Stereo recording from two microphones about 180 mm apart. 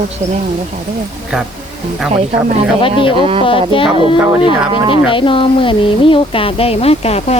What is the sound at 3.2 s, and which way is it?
Speech, 30° right (ahead or behind).